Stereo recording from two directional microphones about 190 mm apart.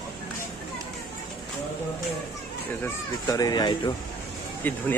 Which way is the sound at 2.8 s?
15° left (ahead or behind).